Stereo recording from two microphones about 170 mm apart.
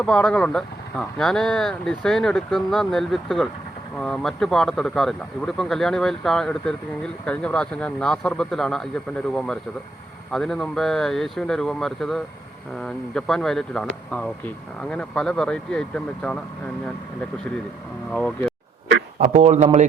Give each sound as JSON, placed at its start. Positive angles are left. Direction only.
{"t": 0.0, "sound": "speech", "side_deg": 5}
{"t": 18.1, "sound": "speech", "side_deg": 5}
{"t": 19.2, "sound": "a man's voice", "side_deg": -45}